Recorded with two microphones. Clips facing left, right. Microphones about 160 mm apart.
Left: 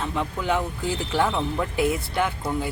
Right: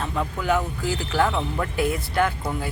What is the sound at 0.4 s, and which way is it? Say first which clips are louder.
Speech: right 2 dB; 25° left (ahead or behind).